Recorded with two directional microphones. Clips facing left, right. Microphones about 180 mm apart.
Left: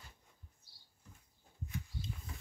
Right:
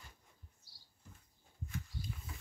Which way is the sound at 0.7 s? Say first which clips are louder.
Right 2 dB; 55° left (ahead or behind).